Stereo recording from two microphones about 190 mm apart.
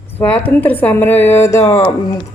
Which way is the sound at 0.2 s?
10° left (ahead or behind).